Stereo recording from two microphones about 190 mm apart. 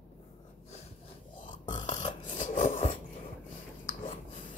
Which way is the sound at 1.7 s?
25° left (ahead or behind).